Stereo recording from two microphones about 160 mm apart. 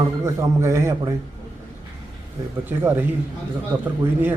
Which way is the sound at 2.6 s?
15° right (ahead or behind).